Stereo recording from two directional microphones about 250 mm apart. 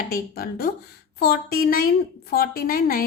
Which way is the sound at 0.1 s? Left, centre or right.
Left.